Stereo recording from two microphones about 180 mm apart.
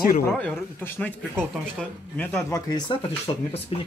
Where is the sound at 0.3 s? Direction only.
5° left (ahead or behind).